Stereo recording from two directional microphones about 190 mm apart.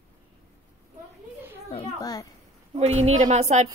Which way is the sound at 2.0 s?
20° left (ahead or behind).